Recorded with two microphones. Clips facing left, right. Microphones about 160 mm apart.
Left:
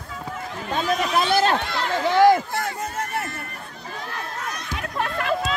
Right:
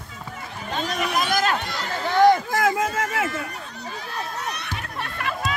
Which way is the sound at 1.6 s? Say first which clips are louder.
Left 4 dB; 55° left (ahead or behind).